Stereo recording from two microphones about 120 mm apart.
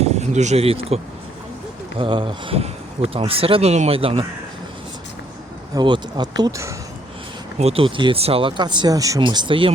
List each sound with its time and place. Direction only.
0.0 s speech: 70° right (ahead or behind); by 0.9 s 55° right (ahead or behind)
2.0 s speech: 45° right (ahead or behind)
5.7 s speech: 40° right (ahead or behind)
7.6 s speech: 55° right (ahead or behind); by 9.2 s 30° right (ahead or behind)
9.2 s speech: 40° right (ahead or behind)